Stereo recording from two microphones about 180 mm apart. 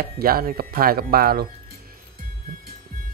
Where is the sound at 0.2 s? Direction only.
55° right (ahead or behind).